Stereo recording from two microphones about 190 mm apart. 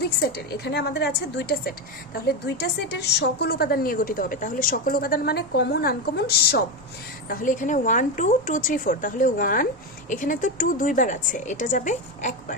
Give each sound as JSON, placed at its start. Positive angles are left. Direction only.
{"t": 0.0, "sound": "a woman's voice", "side_deg": 55}